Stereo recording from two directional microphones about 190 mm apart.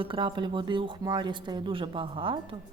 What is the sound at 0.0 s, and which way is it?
A woman's voice, 25° right (ahead or behind).